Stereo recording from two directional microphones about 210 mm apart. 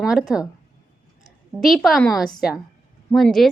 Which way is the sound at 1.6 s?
Centre (ahead or behind).